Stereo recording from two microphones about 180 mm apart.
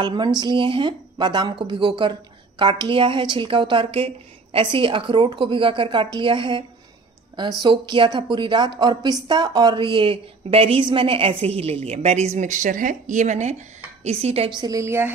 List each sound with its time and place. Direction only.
0.0 s a woman's voice: 25° right (ahead or behind)
7.6 s a woman's voice: 25° right (ahead or behind)
14.6 s speech: 15° right (ahead or behind)